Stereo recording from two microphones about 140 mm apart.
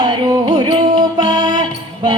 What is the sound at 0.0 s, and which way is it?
Music, 30° right (ahead or behind).